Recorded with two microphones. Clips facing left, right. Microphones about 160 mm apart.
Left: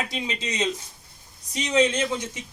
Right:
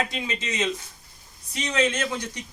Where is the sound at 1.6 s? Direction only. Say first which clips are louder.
Left 3 dB; 15° left (ahead or behind).